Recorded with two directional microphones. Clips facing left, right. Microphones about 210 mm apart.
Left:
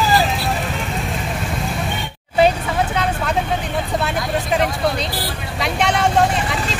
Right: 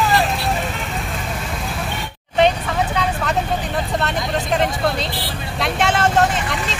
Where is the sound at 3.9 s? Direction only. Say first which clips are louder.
Left 1 dB; 5° left (ahead or behind).